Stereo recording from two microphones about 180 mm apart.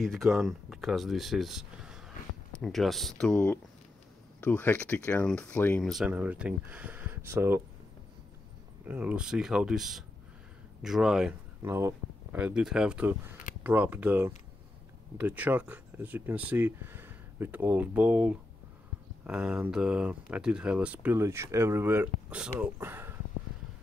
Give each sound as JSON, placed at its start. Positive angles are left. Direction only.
{"t": 0.0, "sound": "speech", "side_deg": 0}
{"t": 8.8, "sound": "speech", "side_deg": -10}
{"t": 11.6, "sound": "speech", "side_deg": -15}